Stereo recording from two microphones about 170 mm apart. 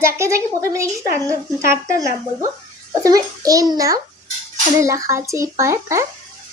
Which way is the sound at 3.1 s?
20° right (ahead or behind).